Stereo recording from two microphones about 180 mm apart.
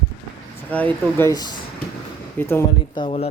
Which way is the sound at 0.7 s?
10° left (ahead or behind).